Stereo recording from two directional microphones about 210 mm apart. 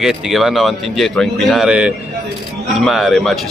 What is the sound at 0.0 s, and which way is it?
Speech, centre (ahead or behind).